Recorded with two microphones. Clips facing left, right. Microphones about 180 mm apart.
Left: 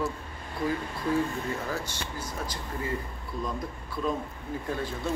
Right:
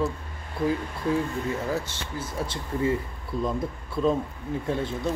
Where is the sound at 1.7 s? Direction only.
25° right (ahead or behind).